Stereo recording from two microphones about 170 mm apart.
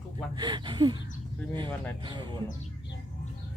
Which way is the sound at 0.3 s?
25° right (ahead or behind).